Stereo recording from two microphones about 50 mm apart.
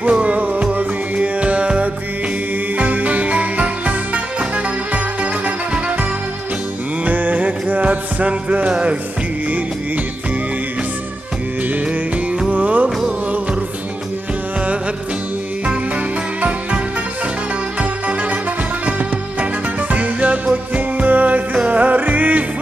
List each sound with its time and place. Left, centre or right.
0.0 s music: right
7.1 s music: right
12.4 s music: right
16.3 s music: right
19.9 s music: right